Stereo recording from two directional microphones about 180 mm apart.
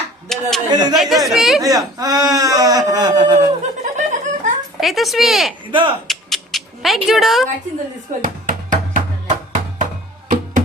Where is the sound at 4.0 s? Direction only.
45° right (ahead or behind).